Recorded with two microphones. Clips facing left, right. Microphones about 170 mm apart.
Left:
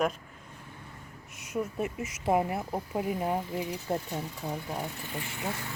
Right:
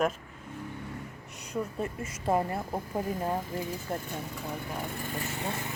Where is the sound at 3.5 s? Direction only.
45° right (ahead or behind).